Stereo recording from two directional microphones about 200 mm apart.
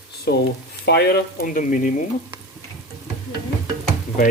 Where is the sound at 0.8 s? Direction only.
50° left (ahead or behind).